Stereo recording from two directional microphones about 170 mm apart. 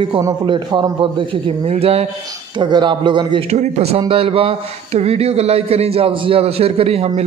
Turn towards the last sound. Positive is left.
turn(degrees=-35)  # may be behind; listen again after turning